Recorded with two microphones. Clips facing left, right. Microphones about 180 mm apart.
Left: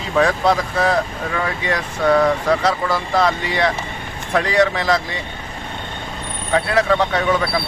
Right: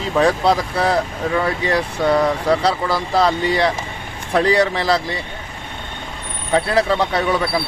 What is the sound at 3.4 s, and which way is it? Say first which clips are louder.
Speech: right 2 dB; 35° right (ahead or behind).